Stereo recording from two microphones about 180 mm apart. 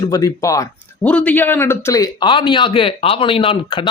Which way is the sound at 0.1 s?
20° left (ahead or behind).